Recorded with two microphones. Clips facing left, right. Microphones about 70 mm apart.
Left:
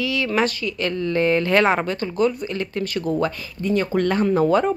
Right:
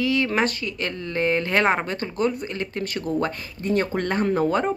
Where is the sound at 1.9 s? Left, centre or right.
Right.